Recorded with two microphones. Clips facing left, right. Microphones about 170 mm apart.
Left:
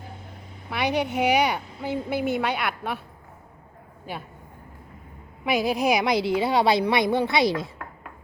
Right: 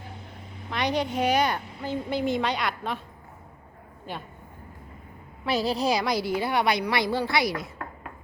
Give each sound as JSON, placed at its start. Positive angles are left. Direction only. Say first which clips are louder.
{"t": 0.7, "sound": "a woman's voice", "louder": "left 2 dB", "side_deg": 10}
{"t": 4.1, "sound": "a woman's voice", "louder": "left 1 dB", "side_deg": 10}
{"t": 5.5, "sound": "a woman's voice", "louder": "left 2 dB", "side_deg": 15}